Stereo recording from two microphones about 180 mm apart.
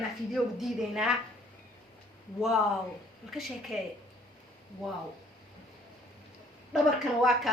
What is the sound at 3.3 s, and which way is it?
Speech, centre (ahead or behind).